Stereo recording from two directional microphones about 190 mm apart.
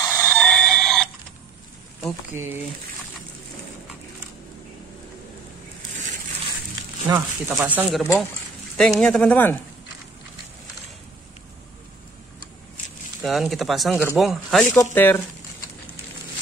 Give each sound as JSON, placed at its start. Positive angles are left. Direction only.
{"t": 0.0, "sound": "oink", "side_deg": 10}
{"t": 2.3, "sound": "speech", "side_deg": -15}
{"t": 7.1, "sound": "speech", "side_deg": -20}
{"t": 7.4, "sound": "speech", "side_deg": -5}
{"t": 13.2, "sound": "speech", "side_deg": 0}
{"t": 14.7, "sound": "speech", "side_deg": 15}